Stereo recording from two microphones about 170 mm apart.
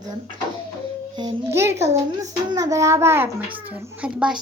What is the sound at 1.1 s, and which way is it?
A child's voice, 20° right (ahead or behind).